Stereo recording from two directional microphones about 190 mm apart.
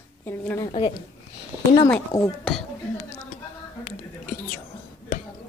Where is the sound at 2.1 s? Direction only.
20° left (ahead or behind).